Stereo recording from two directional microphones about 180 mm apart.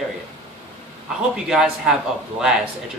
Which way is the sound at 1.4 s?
Centre (ahead or behind).